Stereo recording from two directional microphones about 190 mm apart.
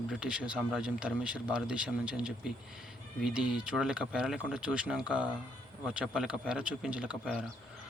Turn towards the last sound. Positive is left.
turn(degrees=-5)  # may be behind; listen again after turning